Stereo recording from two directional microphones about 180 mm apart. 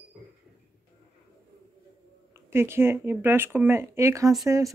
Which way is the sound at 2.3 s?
15° right (ahead or behind).